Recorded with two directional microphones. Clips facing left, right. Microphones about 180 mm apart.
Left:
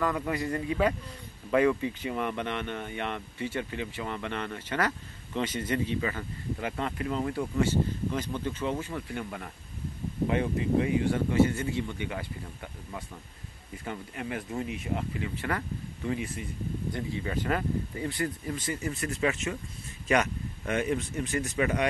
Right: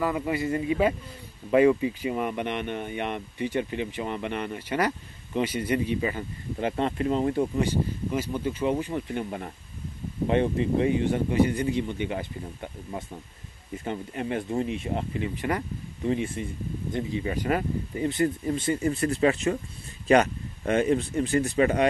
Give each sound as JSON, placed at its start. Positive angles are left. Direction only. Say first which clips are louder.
{"t": 0.0, "sound": "speech", "louder": "right 3 dB", "side_deg": -10}
{"t": 5.9, "sound": "speech", "louder": "right 3 dB", "side_deg": -20}
{"t": 13.8, "sound": "speech", "louder": "right 5 dB", "side_deg": -25}